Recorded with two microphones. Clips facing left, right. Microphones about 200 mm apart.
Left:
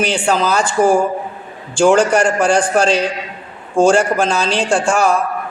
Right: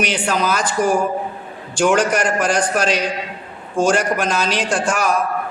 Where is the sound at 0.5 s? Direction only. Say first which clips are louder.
Left 6 dB; 30° left (ahead or behind).